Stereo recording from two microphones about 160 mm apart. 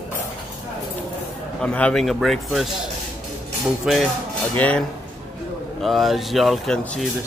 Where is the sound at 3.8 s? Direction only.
Centre (ahead or behind).